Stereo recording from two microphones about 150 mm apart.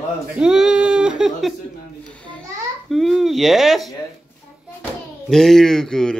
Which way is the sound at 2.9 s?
Centre (ahead or behind).